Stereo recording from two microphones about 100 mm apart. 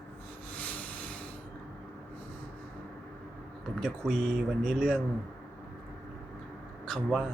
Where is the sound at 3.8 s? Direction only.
10° left (ahead or behind).